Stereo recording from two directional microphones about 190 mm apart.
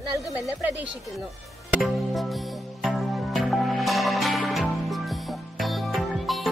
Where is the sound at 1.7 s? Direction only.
Centre (ahead or behind).